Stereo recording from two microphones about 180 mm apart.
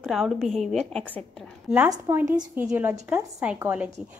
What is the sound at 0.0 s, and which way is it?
A woman's voice, centre (ahead or behind).